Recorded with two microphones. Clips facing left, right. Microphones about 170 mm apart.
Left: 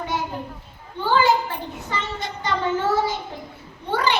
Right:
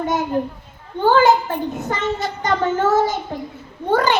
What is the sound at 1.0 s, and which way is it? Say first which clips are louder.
A woman's voice: right 5 dB; 45° right (ahead or behind).